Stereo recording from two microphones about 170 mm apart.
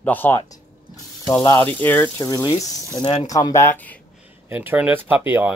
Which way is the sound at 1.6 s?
10° left (ahead or behind).